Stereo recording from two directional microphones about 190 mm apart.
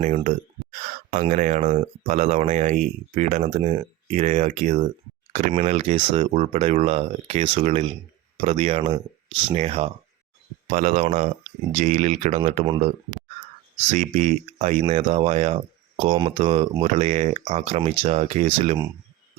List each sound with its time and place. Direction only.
0.0 s speech: 40° right (ahead or behind)
13.9 s speech: 40° right (ahead or behind)